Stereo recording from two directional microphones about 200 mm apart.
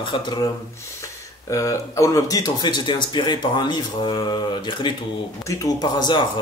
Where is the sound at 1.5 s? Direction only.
15° left (ahead or behind).